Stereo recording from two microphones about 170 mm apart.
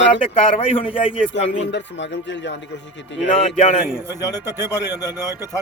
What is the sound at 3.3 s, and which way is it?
Speech, 40° left (ahead or behind).